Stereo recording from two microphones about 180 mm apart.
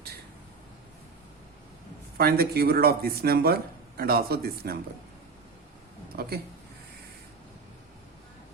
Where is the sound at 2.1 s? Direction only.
60° right (ahead or behind).